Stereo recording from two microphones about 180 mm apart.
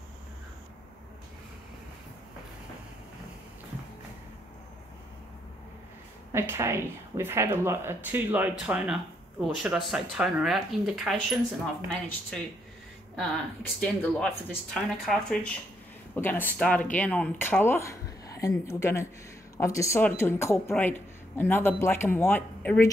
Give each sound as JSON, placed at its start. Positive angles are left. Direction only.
{"t": 6.3, "sound": "speech", "side_deg": -15}
{"t": 13.7, "sound": "speech", "side_deg": 5}